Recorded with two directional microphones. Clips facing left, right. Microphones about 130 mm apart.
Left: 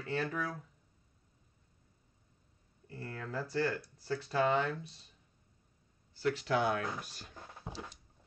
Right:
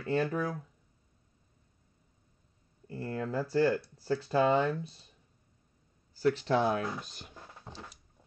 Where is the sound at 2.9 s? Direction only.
15° right (ahead or behind).